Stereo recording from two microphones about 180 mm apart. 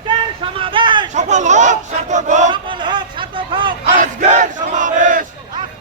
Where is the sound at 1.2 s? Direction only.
40° right (ahead or behind).